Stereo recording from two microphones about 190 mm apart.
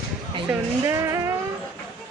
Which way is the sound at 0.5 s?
15° right (ahead or behind).